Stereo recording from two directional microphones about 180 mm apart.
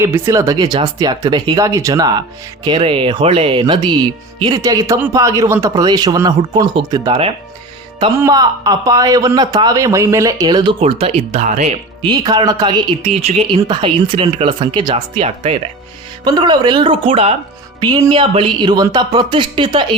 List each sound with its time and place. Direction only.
0.0 s a man's voice: 15° right (ahead or behind)
8.2 s a man's voice: 20° right (ahead or behind); by 11.7 s 40° right (ahead or behind)
12.0 s a man's voice: 25° right (ahead or behind)